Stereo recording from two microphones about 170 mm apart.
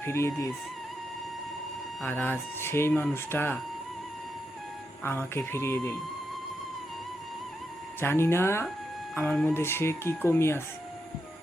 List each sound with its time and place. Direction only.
0.0 s speech: 15° left (ahead or behind)
2.0 s speech: 10° left (ahead or behind)
5.0 s speech: 15° left (ahead or behind)
8.0 s speech: 15° left (ahead or behind)
9.6 s speech: 15° left (ahead or behind)